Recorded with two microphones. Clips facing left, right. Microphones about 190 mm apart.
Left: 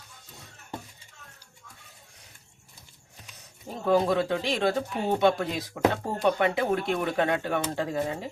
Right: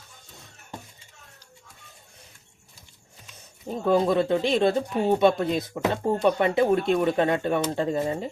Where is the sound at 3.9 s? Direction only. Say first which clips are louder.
Right 2 dB; 25° right (ahead or behind).